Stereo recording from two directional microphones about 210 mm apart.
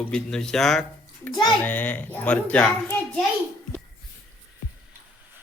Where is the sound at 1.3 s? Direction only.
20° left (ahead or behind).